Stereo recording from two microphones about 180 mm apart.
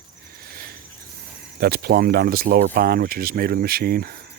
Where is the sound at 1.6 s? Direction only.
60° right (ahead or behind).